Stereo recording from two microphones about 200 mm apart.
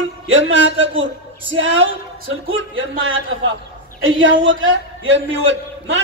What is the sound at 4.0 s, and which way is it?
A man's voice, 70° right (ahead or behind).